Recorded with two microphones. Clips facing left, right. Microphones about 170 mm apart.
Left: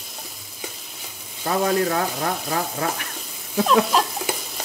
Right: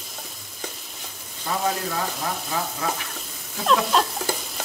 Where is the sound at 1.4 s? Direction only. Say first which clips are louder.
Left 6 dB; 65° left (ahead or behind).